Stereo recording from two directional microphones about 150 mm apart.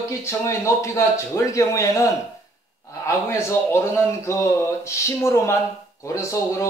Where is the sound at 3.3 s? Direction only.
15° left (ahead or behind).